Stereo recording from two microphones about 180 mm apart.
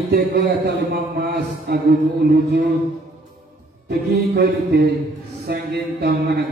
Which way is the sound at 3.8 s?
65° right (ahead or behind).